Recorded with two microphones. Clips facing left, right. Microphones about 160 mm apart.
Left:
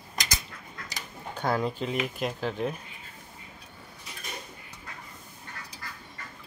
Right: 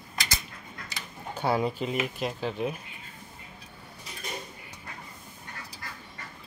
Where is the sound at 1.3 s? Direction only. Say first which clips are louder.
Right 1 dB; 10° right (ahead or behind).